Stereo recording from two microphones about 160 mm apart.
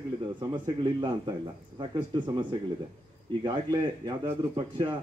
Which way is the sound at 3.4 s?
25° right (ahead or behind).